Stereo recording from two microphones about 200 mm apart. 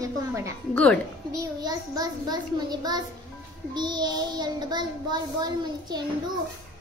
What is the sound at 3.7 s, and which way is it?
Child singing, 20° right (ahead or behind).